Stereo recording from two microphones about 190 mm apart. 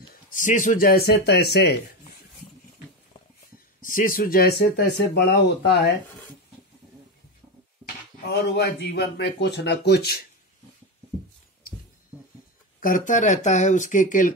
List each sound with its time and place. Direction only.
0.3 s speech: 45° left (ahead or behind); by 1.8 s 60° left (ahead or behind)
3.8 s speech: 45° left (ahead or behind)
8.3 s speech: 55° left (ahead or behind)
12.8 s speech: 45° left (ahead or behind)